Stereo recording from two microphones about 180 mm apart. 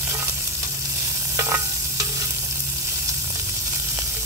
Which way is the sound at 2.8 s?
15° right (ahead or behind).